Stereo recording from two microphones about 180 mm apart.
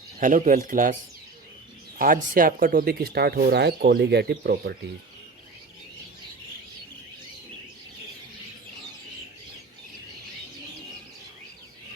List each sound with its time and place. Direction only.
0.2 s speech: 45° right (ahead or behind)
2.0 s speech: 50° right (ahead or behind)